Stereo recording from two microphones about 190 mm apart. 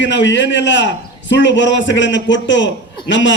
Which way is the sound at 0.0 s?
70° left (ahead or behind).